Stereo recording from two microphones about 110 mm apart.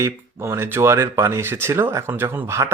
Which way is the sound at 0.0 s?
25° right (ahead or behind).